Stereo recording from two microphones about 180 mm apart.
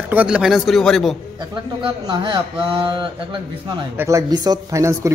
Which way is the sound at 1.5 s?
25° right (ahead or behind).